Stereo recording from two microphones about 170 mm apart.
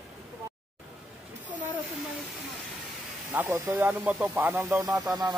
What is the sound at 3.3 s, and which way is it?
Speech, 10° right (ahead or behind).